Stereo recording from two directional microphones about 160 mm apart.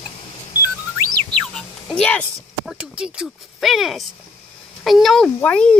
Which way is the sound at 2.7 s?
5° right (ahead or behind).